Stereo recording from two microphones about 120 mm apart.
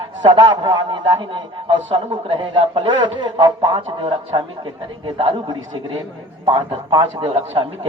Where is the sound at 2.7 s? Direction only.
40° right (ahead or behind).